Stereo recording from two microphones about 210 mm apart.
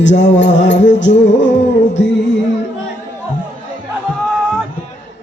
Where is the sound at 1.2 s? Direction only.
60° left (ahead or behind).